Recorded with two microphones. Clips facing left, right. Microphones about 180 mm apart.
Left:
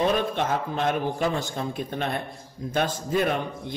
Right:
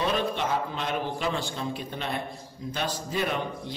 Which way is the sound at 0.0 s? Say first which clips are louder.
Left 3 dB; 50° left (ahead or behind).